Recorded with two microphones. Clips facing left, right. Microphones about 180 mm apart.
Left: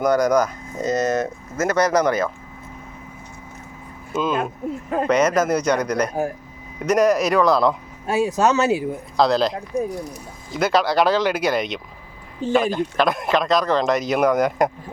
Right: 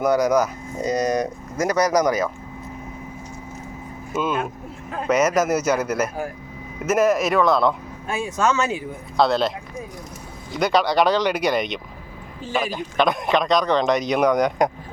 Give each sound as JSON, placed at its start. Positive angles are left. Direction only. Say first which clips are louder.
{"t": 0.0, "sound": "speech", "louder": "left 1 dB", "side_deg": -10}
{"t": 4.1, "sound": "speech", "louder": "left 2 dB", "side_deg": -5}
{"t": 8.0, "sound": "speech", "louder": "left 4 dB", "side_deg": 40}
{"t": 9.1, "sound": "speech", "louder": "left 1 dB", "side_deg": 0}